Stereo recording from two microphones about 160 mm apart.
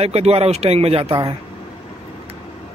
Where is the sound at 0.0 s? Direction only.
40° right (ahead or behind).